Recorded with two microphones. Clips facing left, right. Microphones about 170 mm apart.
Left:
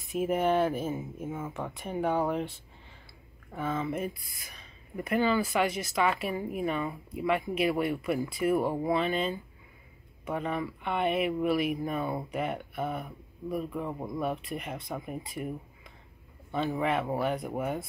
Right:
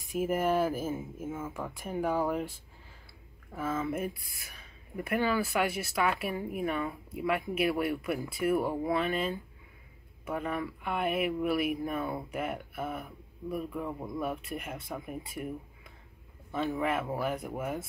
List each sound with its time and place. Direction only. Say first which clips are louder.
0.2 s speech: left 2 dB; 5° right (ahead or behind)
3.5 s speech: left 1 dB; centre (ahead or behind)
13.9 s speech: left 2 dB; 15° left (ahead or behind)
14.2 s speech: left 3 dB; 5° right (ahead or behind)
16.5 s speech: left 2 dB; centre (ahead or behind)